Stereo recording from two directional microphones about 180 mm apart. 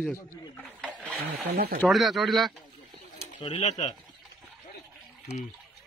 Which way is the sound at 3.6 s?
40° left (ahead or behind).